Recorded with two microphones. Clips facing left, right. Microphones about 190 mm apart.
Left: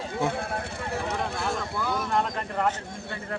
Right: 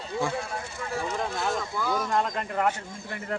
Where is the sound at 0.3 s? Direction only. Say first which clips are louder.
Left 2 dB; 55° left (ahead or behind).